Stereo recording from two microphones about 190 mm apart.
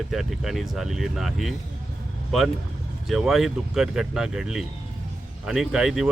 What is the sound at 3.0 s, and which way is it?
Speech, centre (ahead or behind).